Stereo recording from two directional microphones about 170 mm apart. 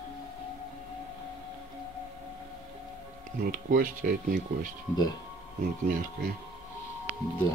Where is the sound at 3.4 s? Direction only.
55° right (ahead or behind).